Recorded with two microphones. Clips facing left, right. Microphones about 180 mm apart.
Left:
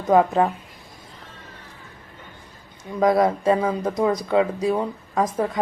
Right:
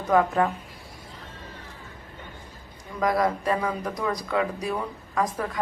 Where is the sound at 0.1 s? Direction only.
25° left (ahead or behind).